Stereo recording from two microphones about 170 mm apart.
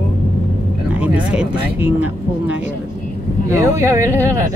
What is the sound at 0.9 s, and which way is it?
Speech, 10° right (ahead or behind).